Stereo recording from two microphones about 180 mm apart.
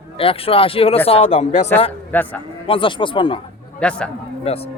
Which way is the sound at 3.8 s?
5° left (ahead or behind).